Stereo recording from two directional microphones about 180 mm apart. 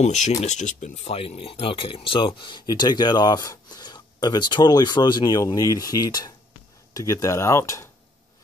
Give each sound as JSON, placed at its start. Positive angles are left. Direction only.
{"t": 0.0, "sound": "speech", "side_deg": 40}